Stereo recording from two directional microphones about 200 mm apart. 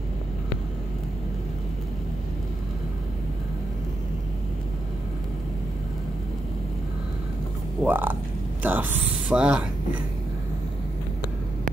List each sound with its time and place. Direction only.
7.8 s speech: 10° right (ahead or behind)